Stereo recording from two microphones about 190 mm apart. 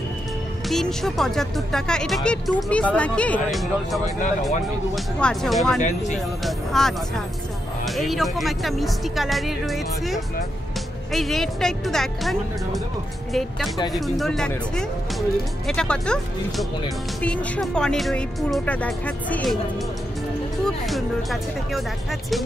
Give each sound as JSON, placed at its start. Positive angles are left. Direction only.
{"t": 0.7, "sound": "speech", "side_deg": 0}
{"t": 5.8, "sound": "speech", "side_deg": 40}
{"t": 6.4, "sound": "speech", "side_deg": 0}
{"t": 20.6, "sound": "speech", "side_deg": 0}